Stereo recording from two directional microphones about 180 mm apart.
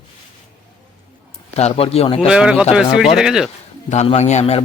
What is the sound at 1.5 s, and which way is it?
Speech, 35° left (ahead or behind).